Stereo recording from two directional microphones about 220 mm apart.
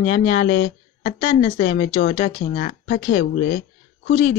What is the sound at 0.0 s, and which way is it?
Speech, 35° left (ahead or behind).